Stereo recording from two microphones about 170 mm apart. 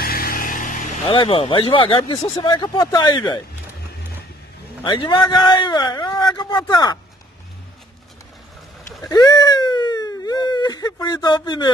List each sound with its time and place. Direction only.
0.0 s vehicle: 60° left (ahead or behind)
1.0 s speech: 30° left (ahead or behind)
4.8 s speech: 30° left (ahead or behind)
9.1 s a sound: 25° left (ahead or behind)